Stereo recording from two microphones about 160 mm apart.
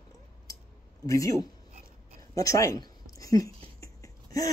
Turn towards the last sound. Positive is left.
turn(degrees=20)  # may be behind; listen again after turning